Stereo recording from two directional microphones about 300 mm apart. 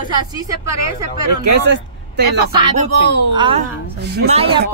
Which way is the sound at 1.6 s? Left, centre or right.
Right.